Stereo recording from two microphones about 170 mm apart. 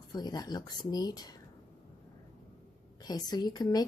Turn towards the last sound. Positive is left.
turn(degrees=25)  # may be behind; listen again after turning